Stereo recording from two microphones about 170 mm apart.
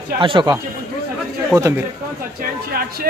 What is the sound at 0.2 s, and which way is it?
A man's voice, 30° right (ahead or behind).